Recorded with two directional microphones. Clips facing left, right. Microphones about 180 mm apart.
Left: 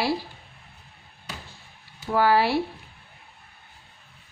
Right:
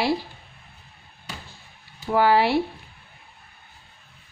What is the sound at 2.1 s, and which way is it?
Speech, 20° right (ahead or behind).